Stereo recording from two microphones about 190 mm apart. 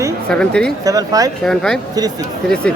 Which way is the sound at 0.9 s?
20° right (ahead or behind).